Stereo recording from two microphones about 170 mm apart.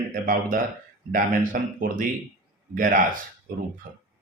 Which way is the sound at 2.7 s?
50° right (ahead or behind).